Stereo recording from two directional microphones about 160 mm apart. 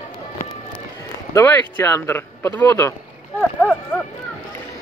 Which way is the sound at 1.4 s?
15° left (ahead or behind).